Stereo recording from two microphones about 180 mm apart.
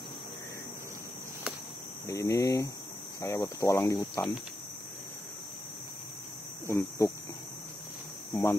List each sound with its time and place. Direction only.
2.0 s speech: 15° left (ahead or behind)
7.0 s speech: 20° left (ahead or behind)
8.3 s cricket: 15° left (ahead or behind)